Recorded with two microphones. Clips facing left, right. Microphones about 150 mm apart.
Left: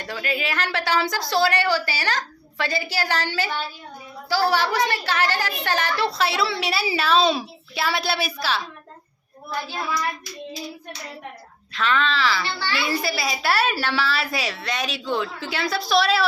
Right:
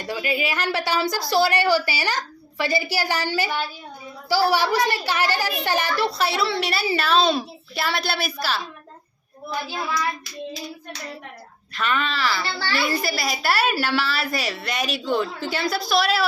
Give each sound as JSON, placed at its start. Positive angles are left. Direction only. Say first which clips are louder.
{"t": 0.0, "sound": "a woman's voice", "louder": "right 2 dB", "side_deg": -10}
{"t": 11.7, "sound": "a woman's voice", "louder": "left 2 dB", "side_deg": -5}
{"t": 12.5, "sound": "a woman's voice", "louder": "right 1 dB", "side_deg": -35}
{"t": 12.9, "sound": "a woman's voice", "louder": "even", "side_deg": 0}